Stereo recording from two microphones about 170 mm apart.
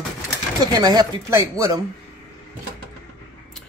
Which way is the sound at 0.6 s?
20° right (ahead or behind).